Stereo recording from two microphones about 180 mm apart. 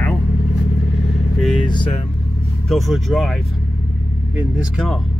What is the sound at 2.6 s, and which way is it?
A man's voice, centre (ahead or behind).